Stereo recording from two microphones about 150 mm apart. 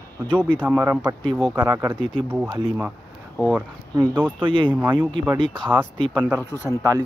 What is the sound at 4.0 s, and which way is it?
Speech, 15° right (ahead or behind).